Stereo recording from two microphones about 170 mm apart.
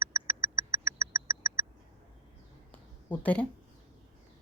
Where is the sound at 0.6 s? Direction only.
20° right (ahead or behind).